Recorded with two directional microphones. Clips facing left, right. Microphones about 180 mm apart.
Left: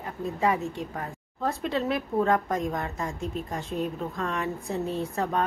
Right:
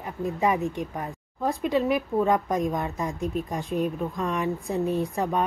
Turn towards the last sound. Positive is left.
turn(degrees=-15)  # may be behind; listen again after turning